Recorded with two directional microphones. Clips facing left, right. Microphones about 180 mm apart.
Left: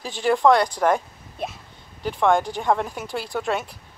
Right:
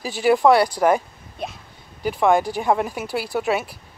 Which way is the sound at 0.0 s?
10° right (ahead or behind).